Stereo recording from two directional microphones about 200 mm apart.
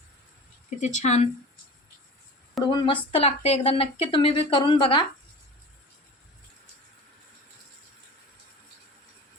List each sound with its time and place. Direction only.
0.8 s speech: 35° left (ahead or behind)
2.6 s a woman's voice: 25° left (ahead or behind)